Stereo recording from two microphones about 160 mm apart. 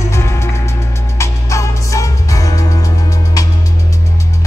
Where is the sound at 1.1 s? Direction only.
20° left (ahead or behind).